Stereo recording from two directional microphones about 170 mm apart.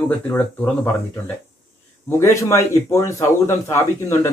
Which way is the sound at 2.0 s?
15° left (ahead or behind).